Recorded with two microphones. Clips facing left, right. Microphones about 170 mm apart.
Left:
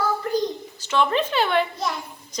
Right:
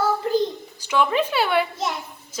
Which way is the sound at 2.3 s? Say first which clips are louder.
Left 1 dB; 5° right (ahead or behind).